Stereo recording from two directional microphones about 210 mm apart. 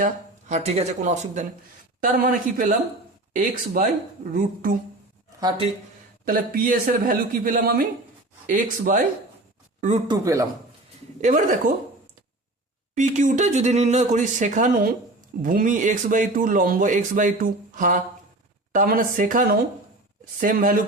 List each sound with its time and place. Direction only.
0.0 s a man's voice: 35° right (ahead or behind)
5.4 s speech: 20° right (ahead or behind)
6.2 s a man's voice: 40° right (ahead or behind)
10.1 s speech: 15° right (ahead or behind)
11.2 s a man's voice: 35° right (ahead or behind)
12.9 s a man's voice: 35° right (ahead or behind)